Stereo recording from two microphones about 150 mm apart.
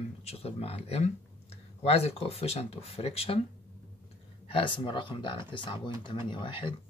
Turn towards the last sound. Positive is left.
turn(degrees=35)  # may be behind; listen again after turning